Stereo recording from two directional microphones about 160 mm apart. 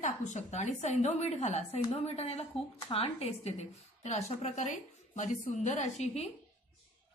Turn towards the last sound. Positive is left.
turn(degrees=40)  # may be behind; listen again after turning